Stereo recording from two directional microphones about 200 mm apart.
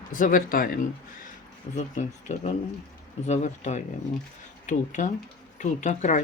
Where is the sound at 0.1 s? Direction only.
45° left (ahead or behind).